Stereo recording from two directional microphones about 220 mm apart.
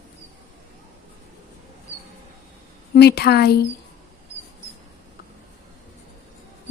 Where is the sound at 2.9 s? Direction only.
45° left (ahead or behind).